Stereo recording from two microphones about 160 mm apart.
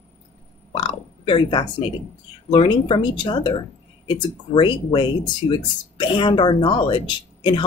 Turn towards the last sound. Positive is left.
turn(degrees=30)  # may be behind; listen again after turning